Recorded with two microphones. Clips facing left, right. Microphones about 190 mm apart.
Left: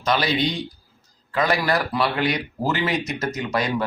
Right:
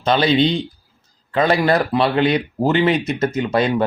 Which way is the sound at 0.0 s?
30° right (ahead or behind).